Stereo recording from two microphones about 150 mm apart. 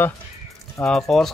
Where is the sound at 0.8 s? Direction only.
Centre (ahead or behind).